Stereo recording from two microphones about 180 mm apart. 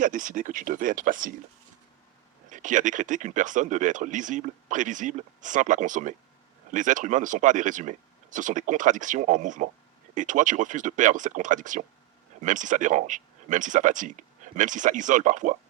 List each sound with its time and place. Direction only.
0.0 s speech: 45° right (ahead or behind)
2.5 s speech: 45° right (ahead or behind)